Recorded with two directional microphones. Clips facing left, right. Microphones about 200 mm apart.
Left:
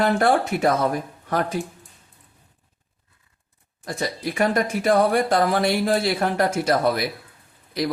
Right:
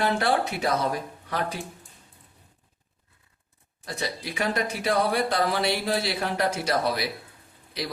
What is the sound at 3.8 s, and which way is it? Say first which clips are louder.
Speech: left 5 dB; 45° left (ahead or behind).